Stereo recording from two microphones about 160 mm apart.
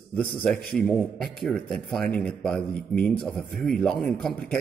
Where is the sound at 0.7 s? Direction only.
5° left (ahead or behind).